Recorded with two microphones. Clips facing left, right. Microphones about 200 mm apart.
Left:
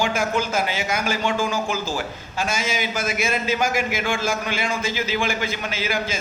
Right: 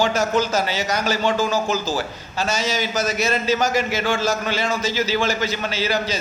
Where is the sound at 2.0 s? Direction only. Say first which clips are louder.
Right 2 dB; 15° left (ahead or behind).